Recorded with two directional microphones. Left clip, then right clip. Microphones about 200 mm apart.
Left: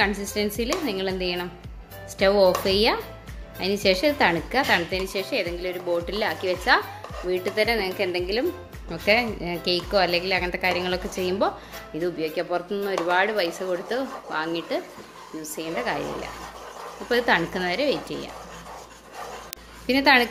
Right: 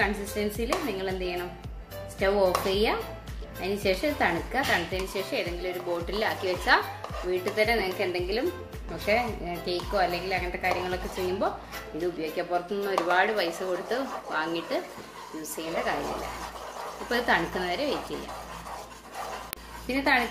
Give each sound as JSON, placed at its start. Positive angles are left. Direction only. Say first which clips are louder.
{"t": 0.6, "sound": "a woman's voice", "louder": "left 3 dB", "side_deg": 45}
{"t": 17.1, "sound": "speech", "louder": "left 4 dB", "side_deg": 40}
{"t": 19.9, "sound": "speech", "louder": "left 7 dB", "side_deg": 40}